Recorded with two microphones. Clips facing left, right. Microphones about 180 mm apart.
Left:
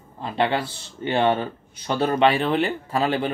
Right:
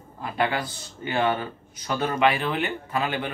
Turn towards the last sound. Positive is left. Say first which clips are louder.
# left 5 dB
turn(degrees=35)  # may be behind; listen again after turning